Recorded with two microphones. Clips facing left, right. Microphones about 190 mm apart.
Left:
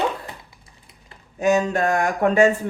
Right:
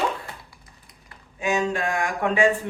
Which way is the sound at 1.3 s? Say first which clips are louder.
Left 5 dB; 40° left (ahead or behind).